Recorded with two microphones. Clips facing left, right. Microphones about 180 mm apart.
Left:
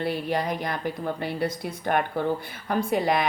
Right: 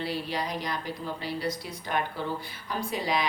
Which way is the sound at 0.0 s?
50° left (ahead or behind).